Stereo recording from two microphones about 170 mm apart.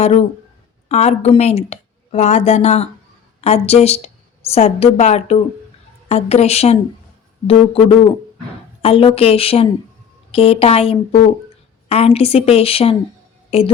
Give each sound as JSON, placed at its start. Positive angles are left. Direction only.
{"t": 0.9, "sound": "a woman's voice", "side_deg": 40}